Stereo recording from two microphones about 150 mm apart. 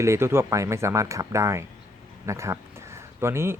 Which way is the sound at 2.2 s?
20° right (ahead or behind).